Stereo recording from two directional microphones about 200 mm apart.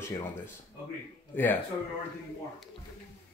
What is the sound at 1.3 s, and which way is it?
Speech, 10° left (ahead or behind).